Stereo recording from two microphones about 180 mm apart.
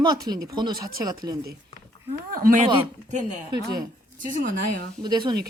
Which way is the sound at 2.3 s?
50° right (ahead or behind).